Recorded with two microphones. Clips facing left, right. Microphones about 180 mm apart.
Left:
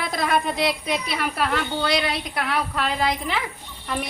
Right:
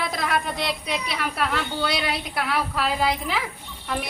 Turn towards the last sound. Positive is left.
turn(degrees=0)  # may be behind; listen again after turning